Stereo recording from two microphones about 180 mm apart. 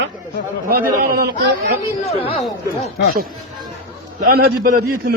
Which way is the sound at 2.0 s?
35° left (ahead or behind).